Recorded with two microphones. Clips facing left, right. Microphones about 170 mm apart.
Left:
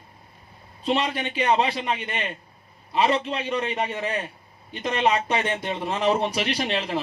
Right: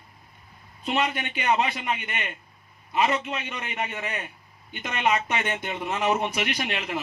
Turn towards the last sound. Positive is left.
turn(degrees=30)  # may be behind; listen again after turning